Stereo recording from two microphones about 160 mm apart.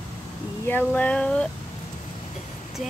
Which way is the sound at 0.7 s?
10° left (ahead or behind).